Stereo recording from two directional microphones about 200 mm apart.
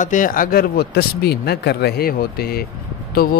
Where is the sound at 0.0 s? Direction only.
40° left (ahead or behind).